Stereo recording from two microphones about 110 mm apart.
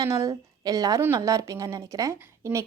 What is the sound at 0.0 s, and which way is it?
A woman's voice, 30° right (ahead or behind).